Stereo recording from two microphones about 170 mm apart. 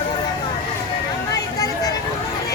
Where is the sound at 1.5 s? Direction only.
20° left (ahead or behind).